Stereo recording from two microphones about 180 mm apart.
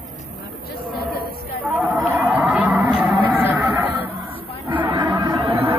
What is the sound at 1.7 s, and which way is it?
Music, 10° right (ahead or behind).